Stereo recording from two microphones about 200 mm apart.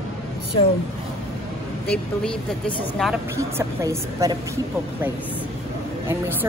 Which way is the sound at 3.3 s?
15° right (ahead or behind).